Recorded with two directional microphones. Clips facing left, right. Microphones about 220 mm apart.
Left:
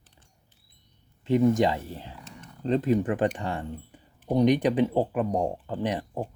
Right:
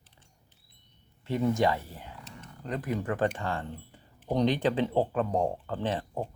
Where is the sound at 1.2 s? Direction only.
20° left (ahead or behind).